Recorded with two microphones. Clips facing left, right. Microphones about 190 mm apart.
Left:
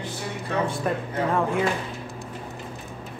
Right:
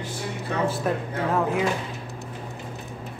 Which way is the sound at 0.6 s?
5° right (ahead or behind).